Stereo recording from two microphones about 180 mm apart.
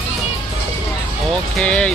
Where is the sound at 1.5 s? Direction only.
5° left (ahead or behind).